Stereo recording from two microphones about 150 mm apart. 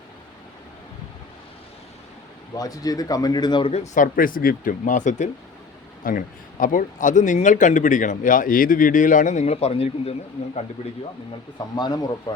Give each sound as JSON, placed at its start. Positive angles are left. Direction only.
{"t": 2.6, "sound": "speech", "side_deg": 25}
{"t": 3.7, "sound": "speech", "side_deg": 50}
{"t": 6.0, "sound": "speech", "side_deg": 65}